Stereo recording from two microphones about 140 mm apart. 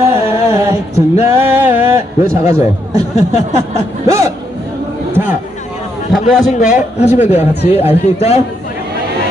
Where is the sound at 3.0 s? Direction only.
50° left (ahead or behind).